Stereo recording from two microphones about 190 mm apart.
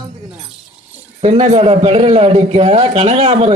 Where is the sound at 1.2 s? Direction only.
30° right (ahead or behind).